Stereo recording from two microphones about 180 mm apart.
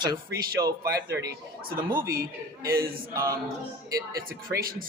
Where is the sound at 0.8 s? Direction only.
60° right (ahead or behind).